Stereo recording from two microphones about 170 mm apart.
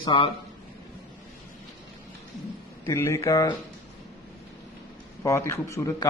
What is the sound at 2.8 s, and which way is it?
Speech, 15° left (ahead or behind).